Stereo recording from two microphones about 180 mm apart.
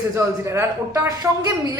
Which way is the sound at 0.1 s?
15° right (ahead or behind).